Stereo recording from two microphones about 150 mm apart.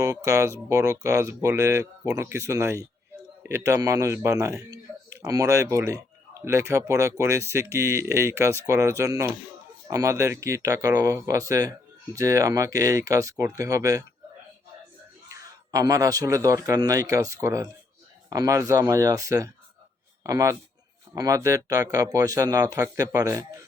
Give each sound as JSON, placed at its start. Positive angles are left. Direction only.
{"t": 0.0, "sound": "speech", "side_deg": -20}
{"t": 15.3, "sound": "a man's voice", "side_deg": -20}